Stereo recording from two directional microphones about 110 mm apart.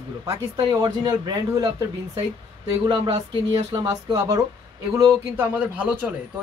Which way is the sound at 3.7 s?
30° right (ahead or behind).